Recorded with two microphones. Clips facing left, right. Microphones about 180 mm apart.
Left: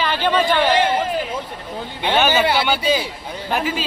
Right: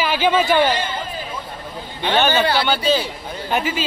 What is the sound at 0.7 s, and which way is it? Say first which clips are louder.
Speech: left 5 dB; 75° left (ahead or behind).